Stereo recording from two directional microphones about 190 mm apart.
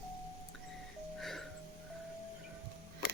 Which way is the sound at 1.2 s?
Centre (ahead or behind).